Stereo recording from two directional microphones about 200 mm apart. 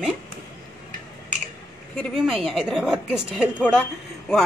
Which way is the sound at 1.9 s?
Centre (ahead or behind).